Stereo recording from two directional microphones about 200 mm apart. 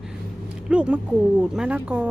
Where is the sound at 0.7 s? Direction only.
5° right (ahead or behind).